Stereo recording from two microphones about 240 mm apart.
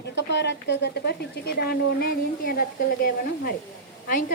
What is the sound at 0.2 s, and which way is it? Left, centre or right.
A woman's voice, left.